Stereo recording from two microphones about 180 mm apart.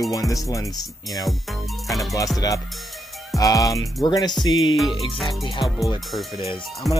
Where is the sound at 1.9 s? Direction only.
Centre (ahead or behind).